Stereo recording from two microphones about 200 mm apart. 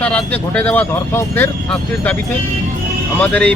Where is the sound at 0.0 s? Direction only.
5° left (ahead or behind).